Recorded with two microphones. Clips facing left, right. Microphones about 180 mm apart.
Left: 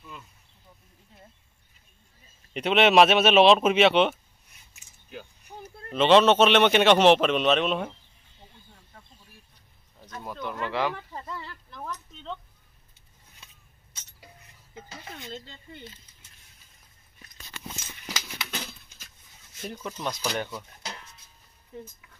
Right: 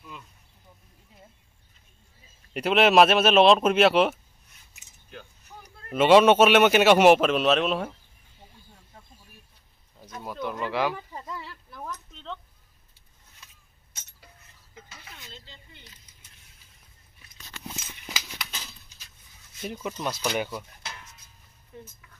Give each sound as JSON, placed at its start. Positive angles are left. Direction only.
{"t": 2.5, "sound": "speech", "side_deg": 0}
{"t": 5.9, "sound": "speech", "side_deg": -10}
{"t": 9.9, "sound": "speech", "side_deg": -10}
{"t": 14.7, "sound": "a sound", "side_deg": 30}
{"t": 15.0, "sound": "speech", "side_deg": 50}
{"t": 18.5, "sound": "a sound", "side_deg": 60}
{"t": 19.6, "sound": "speech", "side_deg": -10}